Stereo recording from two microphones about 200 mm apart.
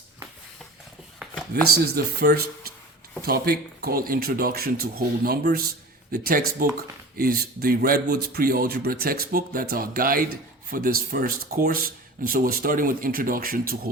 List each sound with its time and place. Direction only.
1.5 s speech: 55° right (ahead or behind)